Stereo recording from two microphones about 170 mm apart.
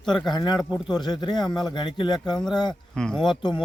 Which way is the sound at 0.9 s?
25° left (ahead or behind).